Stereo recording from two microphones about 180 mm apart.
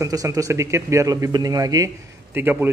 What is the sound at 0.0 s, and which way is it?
A man's voice, 20° right (ahead or behind).